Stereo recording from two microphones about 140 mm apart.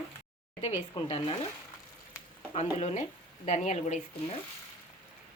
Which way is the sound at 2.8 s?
50° left (ahead or behind).